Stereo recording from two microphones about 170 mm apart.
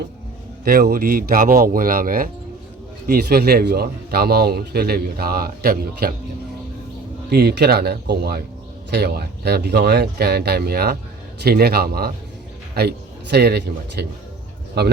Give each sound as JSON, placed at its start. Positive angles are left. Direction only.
{"t": 0.6, "sound": "a man's voice", "side_deg": -60}
{"t": 3.1, "sound": "a man's voice", "side_deg": -65}
{"t": 7.3, "sound": "a man's voice", "side_deg": -70}
{"t": 13.3, "sound": "speech", "side_deg": -75}